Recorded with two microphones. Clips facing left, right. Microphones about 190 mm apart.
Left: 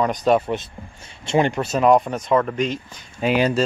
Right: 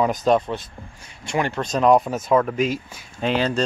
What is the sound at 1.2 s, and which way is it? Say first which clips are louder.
Speech: left 5 dB; 20° left (ahead or behind).